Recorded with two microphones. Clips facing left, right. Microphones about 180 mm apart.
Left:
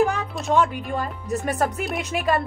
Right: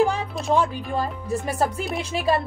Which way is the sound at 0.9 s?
30° right (ahead or behind).